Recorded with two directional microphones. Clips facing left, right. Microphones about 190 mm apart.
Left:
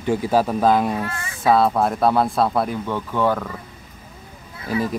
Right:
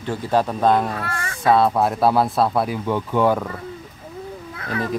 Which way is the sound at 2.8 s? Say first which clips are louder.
Right 2 dB; 15° right (ahead or behind).